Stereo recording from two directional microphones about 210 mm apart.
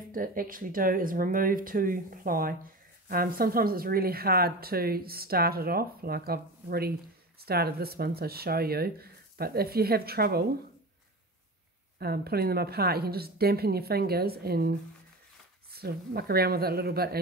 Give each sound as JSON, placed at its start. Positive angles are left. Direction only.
{"t": 0.1, "sound": "speech", "side_deg": -40}
{"t": 12.0, "sound": "speech", "side_deg": -50}
{"t": 15.7, "sound": "speech", "side_deg": -45}